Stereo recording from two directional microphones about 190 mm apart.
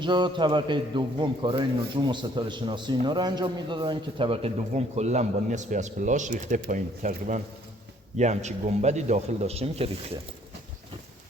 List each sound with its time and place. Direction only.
0.0 s a man's voice: 25° right (ahead or behind)